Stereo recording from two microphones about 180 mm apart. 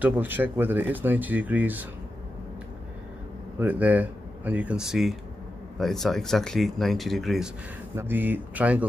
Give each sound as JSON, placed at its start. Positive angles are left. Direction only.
{"t": 0.0, "sound": "speech", "side_deg": -10}
{"t": 3.5, "sound": "speech", "side_deg": -10}
{"t": 7.9, "sound": "speech", "side_deg": -10}